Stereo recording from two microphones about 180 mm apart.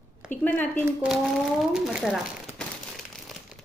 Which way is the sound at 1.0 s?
5° right (ahead or behind).